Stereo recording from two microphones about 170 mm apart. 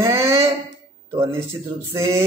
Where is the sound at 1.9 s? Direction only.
15° right (ahead or behind).